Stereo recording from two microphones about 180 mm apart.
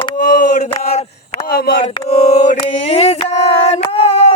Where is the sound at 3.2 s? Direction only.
35° left (ahead or behind).